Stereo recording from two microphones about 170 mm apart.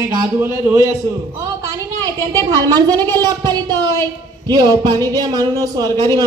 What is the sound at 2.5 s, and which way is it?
Speech, 20° right (ahead or behind).